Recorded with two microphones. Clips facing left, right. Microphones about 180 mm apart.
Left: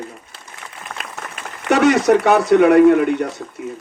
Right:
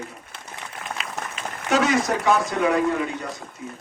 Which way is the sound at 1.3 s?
65° left (ahead or behind).